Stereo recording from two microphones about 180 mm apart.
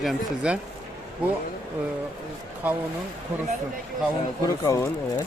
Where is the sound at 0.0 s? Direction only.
5° right (ahead or behind).